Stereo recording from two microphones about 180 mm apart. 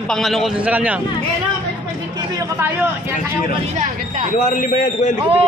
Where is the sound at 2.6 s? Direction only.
15° right (ahead or behind).